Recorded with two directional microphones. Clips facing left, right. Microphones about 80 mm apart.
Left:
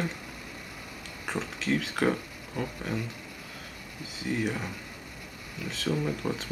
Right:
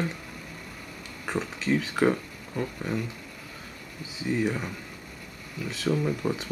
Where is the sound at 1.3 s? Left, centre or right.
Centre.